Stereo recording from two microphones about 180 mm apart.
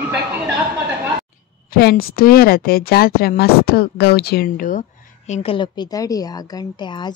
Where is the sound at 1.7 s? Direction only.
60° left (ahead or behind).